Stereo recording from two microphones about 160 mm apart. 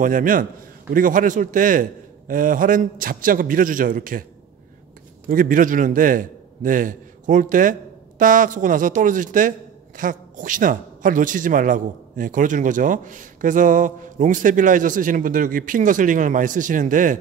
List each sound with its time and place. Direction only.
0.0 s speech: 55° right (ahead or behind)
5.3 s speech: 60° right (ahead or behind)